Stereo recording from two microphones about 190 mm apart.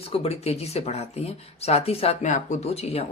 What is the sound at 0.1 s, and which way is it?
Speech, 30° left (ahead or behind).